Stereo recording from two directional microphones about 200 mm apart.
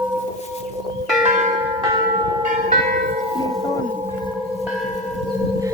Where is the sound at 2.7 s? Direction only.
40° right (ahead or behind).